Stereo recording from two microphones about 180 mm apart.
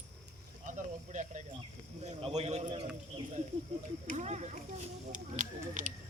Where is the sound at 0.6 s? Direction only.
45° right (ahead or behind).